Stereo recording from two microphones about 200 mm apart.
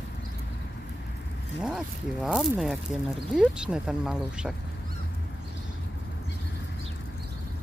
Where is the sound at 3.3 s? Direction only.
5° right (ahead or behind).